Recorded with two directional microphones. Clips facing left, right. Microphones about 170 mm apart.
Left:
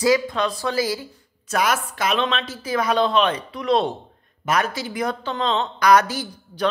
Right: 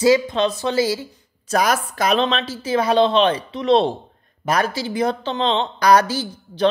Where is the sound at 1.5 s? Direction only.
40° right (ahead or behind).